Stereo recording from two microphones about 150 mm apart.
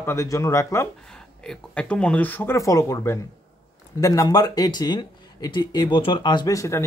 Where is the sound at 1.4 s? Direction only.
5° left (ahead or behind).